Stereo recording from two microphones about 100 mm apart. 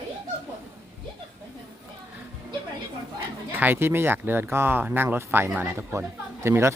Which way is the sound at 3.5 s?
20° right (ahead or behind).